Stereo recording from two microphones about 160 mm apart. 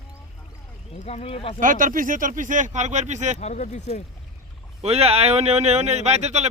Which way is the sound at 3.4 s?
45° left (ahead or behind).